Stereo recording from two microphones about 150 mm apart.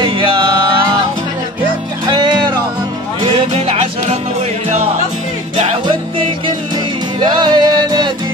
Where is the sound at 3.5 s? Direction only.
45° right (ahead or behind).